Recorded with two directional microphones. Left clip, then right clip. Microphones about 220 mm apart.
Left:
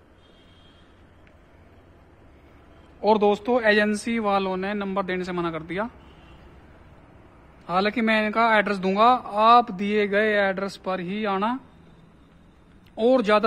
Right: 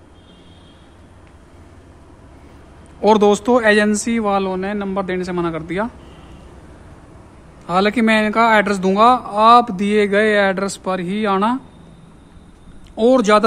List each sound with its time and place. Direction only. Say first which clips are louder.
3.0 s speech: right 7 dB; 10° right (ahead or behind); by 5.9 s 10° left (ahead or behind)
7.6 s speech: right 7 dB; 5° left (ahead or behind)
12.9 s speech: right 6 dB; 5° left (ahead or behind)